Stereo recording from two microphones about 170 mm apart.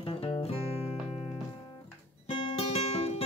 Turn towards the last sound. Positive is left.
turn(degrees=35)  # may be behind; listen again after turning